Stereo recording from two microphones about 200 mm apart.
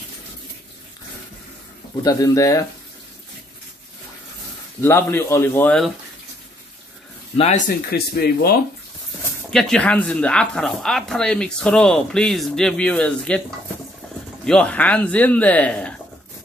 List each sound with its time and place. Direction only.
2.0 s speech: 15° left (ahead or behind)
4.8 s speech: 10° left (ahead or behind)
7.3 s speech: 35° left (ahead or behind); by 8.5 s 50° left (ahead or behind)
9.5 s speech: 5° left (ahead or behind)
14.4 s speech: 5° left (ahead or behind)